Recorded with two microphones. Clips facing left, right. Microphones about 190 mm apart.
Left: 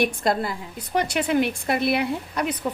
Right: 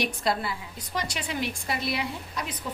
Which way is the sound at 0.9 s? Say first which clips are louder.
Left 10 dB; 60° left (ahead or behind).